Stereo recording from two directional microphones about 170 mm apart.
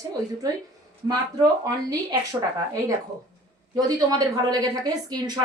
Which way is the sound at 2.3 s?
20° right (ahead or behind).